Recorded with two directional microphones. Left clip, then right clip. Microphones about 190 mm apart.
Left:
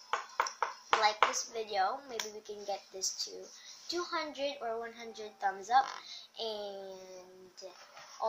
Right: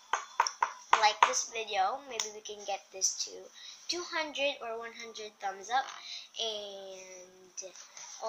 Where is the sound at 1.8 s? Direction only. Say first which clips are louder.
Right 2 dB; centre (ahead or behind).